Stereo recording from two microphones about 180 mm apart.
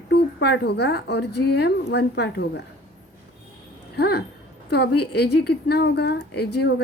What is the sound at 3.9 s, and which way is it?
A woman's voice, 65° left (ahead or behind).